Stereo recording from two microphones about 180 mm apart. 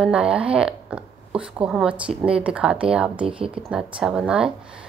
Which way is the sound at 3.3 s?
30° right (ahead or behind).